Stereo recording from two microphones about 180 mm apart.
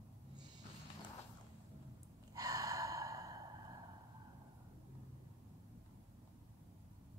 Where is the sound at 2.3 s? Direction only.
20° right (ahead or behind).